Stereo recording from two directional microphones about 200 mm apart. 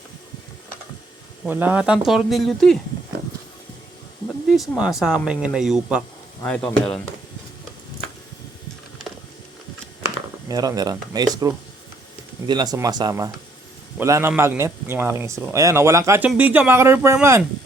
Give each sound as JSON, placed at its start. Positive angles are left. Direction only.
{"t": 1.5, "sound": "speech", "side_deg": -10}
{"t": 4.4, "sound": "speech", "side_deg": 0}
{"t": 10.5, "sound": "speech", "side_deg": -20}
{"t": 12.5, "sound": "speech", "side_deg": -20}